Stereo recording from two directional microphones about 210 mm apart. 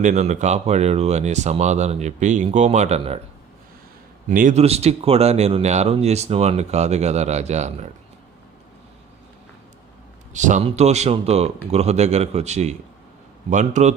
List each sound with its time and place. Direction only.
0.0 s speech: 35° right (ahead or behind)
4.3 s speech: 35° right (ahead or behind)
10.3 s speech: 35° right (ahead or behind)